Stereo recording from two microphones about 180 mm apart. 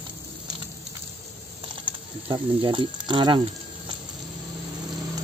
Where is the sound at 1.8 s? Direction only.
25° right (ahead or behind).